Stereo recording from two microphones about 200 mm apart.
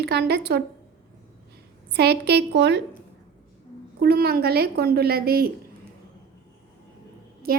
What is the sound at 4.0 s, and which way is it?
A woman's voice, 50° right (ahead or behind).